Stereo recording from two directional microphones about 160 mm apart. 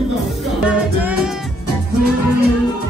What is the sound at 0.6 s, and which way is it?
Music, 5° right (ahead or behind).